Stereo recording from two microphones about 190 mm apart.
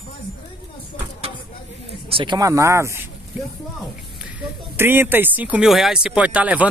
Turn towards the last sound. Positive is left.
turn(degrees=-10)  # may be behind; listen again after turning